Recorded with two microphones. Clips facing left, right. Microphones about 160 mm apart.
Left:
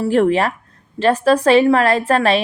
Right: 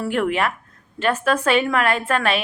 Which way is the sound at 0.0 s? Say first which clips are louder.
Left 6 dB; 35° left (ahead or behind).